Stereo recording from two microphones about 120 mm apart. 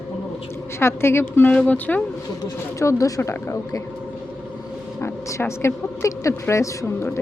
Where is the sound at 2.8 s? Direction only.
25° left (ahead or behind).